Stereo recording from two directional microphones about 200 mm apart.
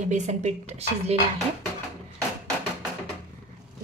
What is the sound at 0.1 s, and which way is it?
A woman's voice, 35° right (ahead or behind).